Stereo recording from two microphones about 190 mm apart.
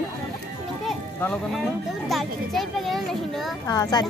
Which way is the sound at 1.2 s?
Centre (ahead or behind).